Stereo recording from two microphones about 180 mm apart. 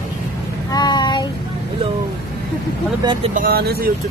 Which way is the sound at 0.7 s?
20° left (ahead or behind).